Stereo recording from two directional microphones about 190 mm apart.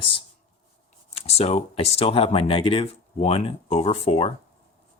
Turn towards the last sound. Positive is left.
turn(degrees=30)  # may be behind; listen again after turning